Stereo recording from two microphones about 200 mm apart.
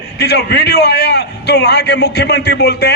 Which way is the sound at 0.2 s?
55° left (ahead or behind).